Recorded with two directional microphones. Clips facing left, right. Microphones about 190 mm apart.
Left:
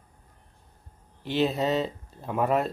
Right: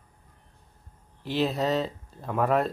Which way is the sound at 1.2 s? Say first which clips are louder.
Left 1 dB; centre (ahead or behind).